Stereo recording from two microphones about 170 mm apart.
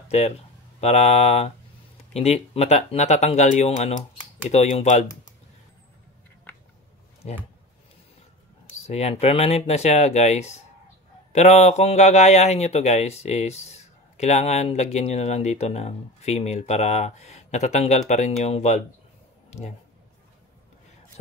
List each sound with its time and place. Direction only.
0.1 s a man's voice: 40° left (ahead or behind)
7.2 s speech: 40° left (ahead or behind)
8.8 s a man's voice: 40° left (ahead or behind)